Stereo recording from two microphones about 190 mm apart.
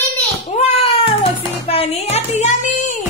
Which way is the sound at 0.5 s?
35° left (ahead or behind).